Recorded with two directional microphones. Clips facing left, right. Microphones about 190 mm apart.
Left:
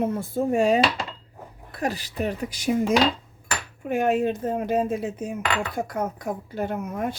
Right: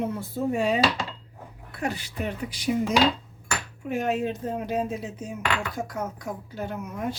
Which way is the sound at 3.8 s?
55° left (ahead or behind).